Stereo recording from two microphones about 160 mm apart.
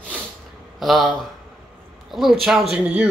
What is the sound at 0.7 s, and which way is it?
Speech, centre (ahead or behind).